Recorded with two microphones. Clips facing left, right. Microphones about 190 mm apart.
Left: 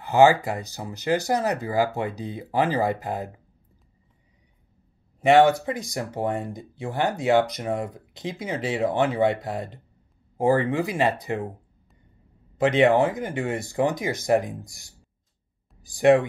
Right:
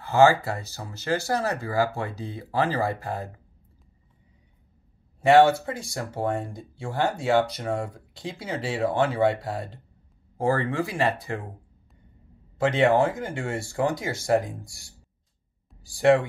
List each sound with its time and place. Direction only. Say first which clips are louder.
0.0 s speech: left 2 dB; 15° left (ahead or behind)
5.2 s speech: even; 20° left (ahead or behind)
12.5 s speech: left 2 dB; 20° left (ahead or behind)